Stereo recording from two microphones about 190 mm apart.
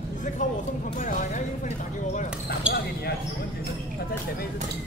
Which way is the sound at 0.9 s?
40° left (ahead or behind).